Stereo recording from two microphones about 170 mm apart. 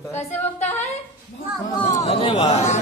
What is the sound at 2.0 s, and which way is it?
Speech, 30° left (ahead or behind).